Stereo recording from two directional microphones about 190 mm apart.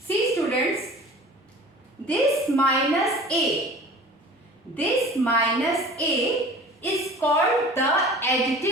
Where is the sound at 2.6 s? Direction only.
Centre (ahead or behind).